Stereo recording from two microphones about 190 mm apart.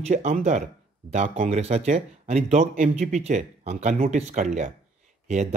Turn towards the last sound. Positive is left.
turn(degrees=-40)  # may be behind; listen again after turning